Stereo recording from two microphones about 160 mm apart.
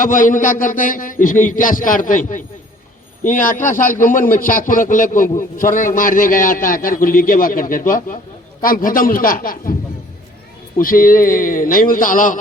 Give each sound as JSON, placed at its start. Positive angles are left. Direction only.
{"t": 0.0, "sound": "a man's voice", "side_deg": 55}
{"t": 10.8, "sound": "a man's voice", "side_deg": 60}